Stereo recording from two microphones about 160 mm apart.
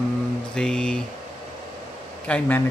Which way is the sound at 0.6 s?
5° left (ahead or behind).